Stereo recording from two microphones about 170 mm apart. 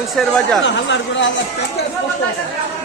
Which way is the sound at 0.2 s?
Centre (ahead or behind).